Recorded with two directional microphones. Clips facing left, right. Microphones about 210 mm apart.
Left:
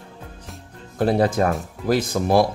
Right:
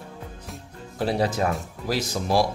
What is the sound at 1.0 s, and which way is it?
A man's voice, 55° left (ahead or behind).